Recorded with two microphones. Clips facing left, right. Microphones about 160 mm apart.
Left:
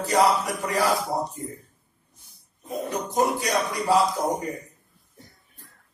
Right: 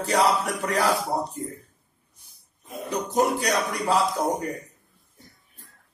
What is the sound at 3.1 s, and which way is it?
Speech, 60° right (ahead or behind).